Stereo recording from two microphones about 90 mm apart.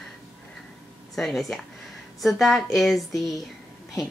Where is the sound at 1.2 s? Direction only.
Centre (ahead or behind).